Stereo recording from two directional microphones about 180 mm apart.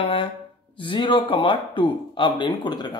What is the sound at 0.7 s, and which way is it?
A man's voice, 25° left (ahead or behind).